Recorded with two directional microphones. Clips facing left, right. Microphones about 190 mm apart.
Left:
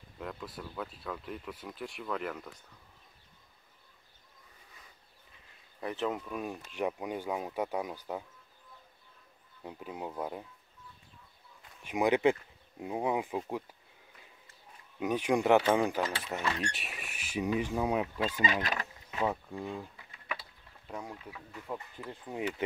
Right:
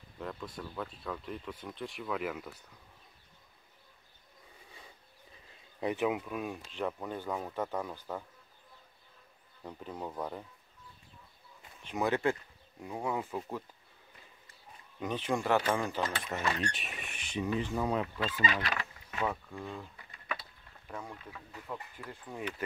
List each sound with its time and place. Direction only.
0.2 s speech: centre (ahead or behind)
5.8 s speech: 20° right (ahead or behind)
6.0 s speech: 5° right (ahead or behind)
6.7 s speech: 10° left (ahead or behind)
9.6 s speech: 10° left (ahead or behind)
11.8 s speech: 15° left (ahead or behind)
15.0 s speech: 10° left (ahead or behind)
16.0 s speech: 5° left (ahead or behind)
21.0 s speech: 15° left (ahead or behind)